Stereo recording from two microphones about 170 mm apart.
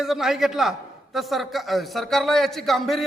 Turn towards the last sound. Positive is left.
turn(degrees=0)  # may be behind; listen again after turning